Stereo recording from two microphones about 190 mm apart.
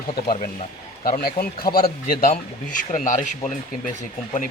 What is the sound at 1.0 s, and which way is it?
A man's voice, 50° left (ahead or behind).